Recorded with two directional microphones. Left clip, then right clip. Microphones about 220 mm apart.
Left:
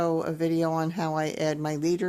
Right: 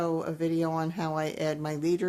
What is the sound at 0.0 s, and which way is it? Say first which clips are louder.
Speech: left 3 dB; 25° left (ahead or behind).